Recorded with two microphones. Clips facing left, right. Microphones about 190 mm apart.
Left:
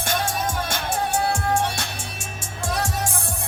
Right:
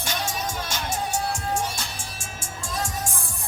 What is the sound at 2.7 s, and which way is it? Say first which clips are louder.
Music: left 4 dB; 70° left (ahead or behind).